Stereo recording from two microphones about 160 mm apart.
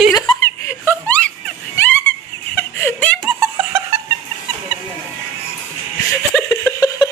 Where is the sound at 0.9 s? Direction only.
10° left (ahead or behind).